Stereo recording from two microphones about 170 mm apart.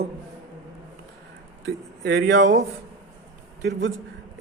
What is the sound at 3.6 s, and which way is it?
Speech, 90° right.